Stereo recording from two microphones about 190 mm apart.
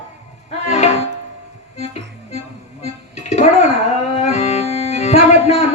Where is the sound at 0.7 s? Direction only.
35° left (ahead or behind).